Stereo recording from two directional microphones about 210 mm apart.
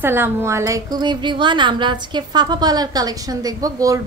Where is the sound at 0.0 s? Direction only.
10° right (ahead or behind).